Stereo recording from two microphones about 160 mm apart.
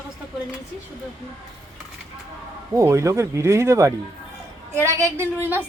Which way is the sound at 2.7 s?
20° right (ahead or behind).